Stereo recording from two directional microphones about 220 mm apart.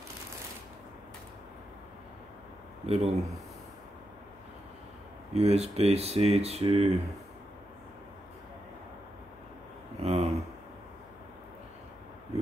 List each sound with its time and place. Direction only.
2.9 s speech: 30° right (ahead or behind)
5.3 s speech: 30° right (ahead or behind)
9.9 s a sound: 30° right (ahead or behind)